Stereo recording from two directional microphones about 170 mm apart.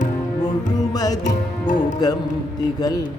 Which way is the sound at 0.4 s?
20° left (ahead or behind).